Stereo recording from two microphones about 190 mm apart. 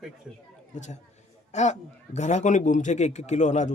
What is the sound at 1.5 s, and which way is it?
A man's voice, 40° left (ahead or behind).